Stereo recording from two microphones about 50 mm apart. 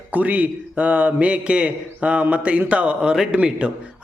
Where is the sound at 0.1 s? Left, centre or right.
Right.